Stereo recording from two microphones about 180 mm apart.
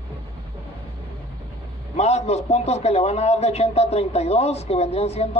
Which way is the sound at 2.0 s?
35° left (ahead or behind).